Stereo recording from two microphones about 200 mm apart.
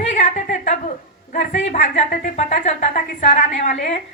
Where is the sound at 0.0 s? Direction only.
35° left (ahead or behind).